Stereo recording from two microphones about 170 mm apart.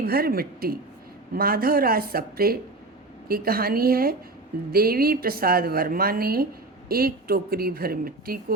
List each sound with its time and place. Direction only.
0.0 s a woman's voice: 60° right (ahead or behind)